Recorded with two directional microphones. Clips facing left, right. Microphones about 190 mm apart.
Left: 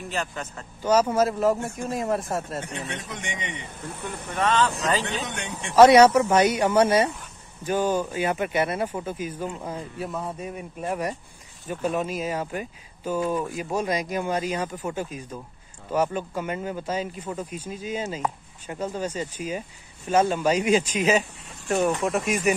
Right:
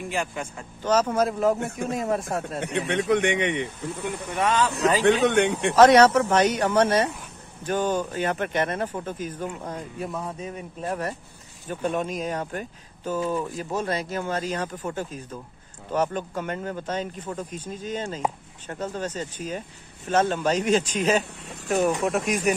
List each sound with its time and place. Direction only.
0.0 s speech: 10° right (ahead or behind)
0.8 s speech: 10° left (ahead or behind)
1.6 s speech: 60° right (ahead or behind)
1.9 s speech: centre (ahead or behind)
3.1 s speech: 65° right (ahead or behind)
4.4 s speech: 10° right (ahead or behind)
5.0 s speech: 60° right (ahead or behind)
5.8 s speech: 10° left (ahead or behind)